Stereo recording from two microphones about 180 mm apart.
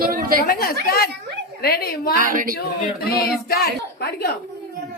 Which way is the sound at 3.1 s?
60° left (ahead or behind).